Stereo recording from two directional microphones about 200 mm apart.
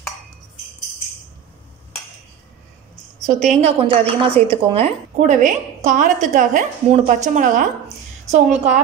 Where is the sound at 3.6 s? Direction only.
30° right (ahead or behind).